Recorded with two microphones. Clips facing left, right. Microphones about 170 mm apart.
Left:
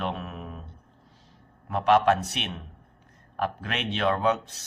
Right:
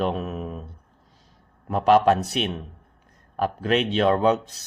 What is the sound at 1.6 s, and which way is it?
A man's voice, 40° right (ahead or behind).